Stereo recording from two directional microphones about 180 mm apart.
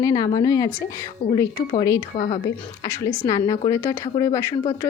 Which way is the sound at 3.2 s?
20° left (ahead or behind).